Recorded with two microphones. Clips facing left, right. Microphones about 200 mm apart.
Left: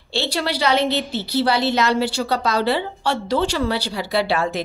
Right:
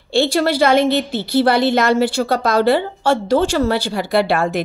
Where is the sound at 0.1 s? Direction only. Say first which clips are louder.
Right 8 dB; 50° right (ahead or behind).